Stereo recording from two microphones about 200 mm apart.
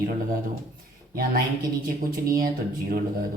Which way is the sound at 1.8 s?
45° right (ahead or behind).